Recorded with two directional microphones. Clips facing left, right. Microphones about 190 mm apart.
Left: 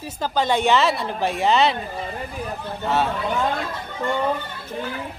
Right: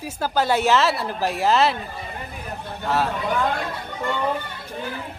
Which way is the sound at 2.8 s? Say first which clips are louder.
Left 1 dB; centre (ahead or behind).